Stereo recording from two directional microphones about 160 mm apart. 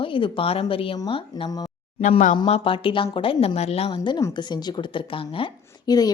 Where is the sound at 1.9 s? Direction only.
45° left (ahead or behind).